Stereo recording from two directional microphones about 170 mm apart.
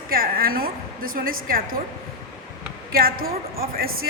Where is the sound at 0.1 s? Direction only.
60° right (ahead or behind).